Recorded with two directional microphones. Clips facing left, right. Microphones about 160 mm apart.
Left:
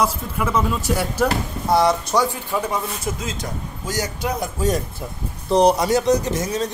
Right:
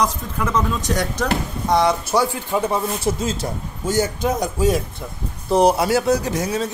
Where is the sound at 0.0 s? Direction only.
5° left (ahead or behind).